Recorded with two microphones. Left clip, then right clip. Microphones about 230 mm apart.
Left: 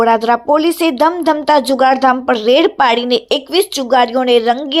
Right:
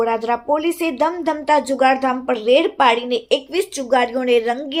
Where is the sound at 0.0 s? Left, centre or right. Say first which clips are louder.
Left 7 dB; left.